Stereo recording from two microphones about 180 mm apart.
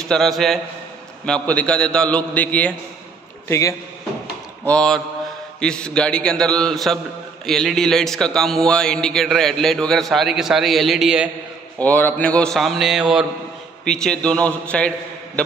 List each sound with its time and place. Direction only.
0.1 s a man's voice: centre (ahead or behind)
4.6 s a man's voice: 5° left (ahead or behind)
11.8 s a man's voice: 10° left (ahead or behind)